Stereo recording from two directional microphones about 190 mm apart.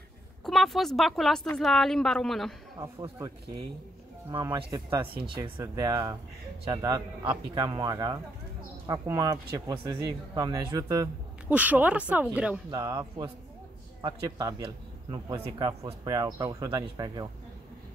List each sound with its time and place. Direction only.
0.5 s a woman's voice: centre (ahead or behind)
2.8 s speech: 15° right (ahead or behind)
4.3 s a man's voice: 20° right (ahead or behind); by 12.8 s 5° right (ahead or behind)
12.8 s a man's voice: 20° right (ahead or behind)